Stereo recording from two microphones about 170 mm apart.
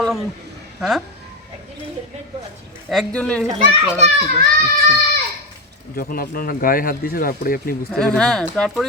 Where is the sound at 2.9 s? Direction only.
5° left (ahead or behind).